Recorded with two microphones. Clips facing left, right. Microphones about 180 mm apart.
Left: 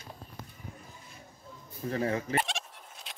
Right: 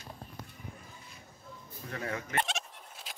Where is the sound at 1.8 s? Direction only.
30° left (ahead or behind).